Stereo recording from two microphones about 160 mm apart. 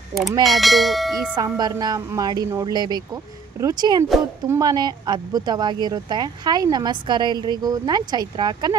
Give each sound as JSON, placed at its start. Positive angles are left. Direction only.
{"t": 0.5, "sound": "bell", "side_deg": 0}
{"t": 1.3, "sound": "speech", "side_deg": -25}